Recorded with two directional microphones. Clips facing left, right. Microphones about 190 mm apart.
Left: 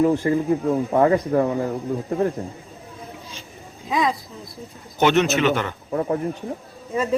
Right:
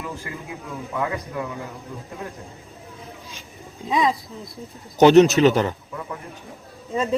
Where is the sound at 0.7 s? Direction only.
45° left (ahead or behind).